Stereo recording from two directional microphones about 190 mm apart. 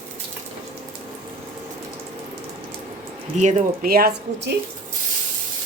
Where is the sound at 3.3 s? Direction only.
40° right (ahead or behind); by 4.5 s 60° right (ahead or behind).